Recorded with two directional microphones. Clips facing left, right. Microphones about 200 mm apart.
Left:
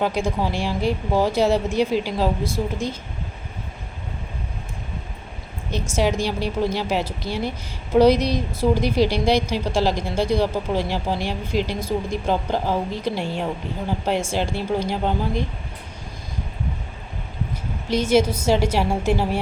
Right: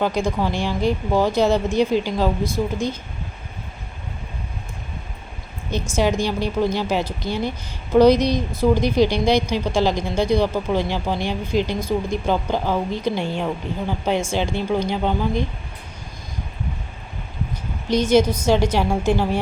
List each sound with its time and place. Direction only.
0.0 s a woman's voice: 5° left (ahead or behind)
2.4 s a woman's voice: 25° left (ahead or behind)
6.0 s a woman's voice: centre (ahead or behind)
17.8 s a woman's voice: 5° left (ahead or behind)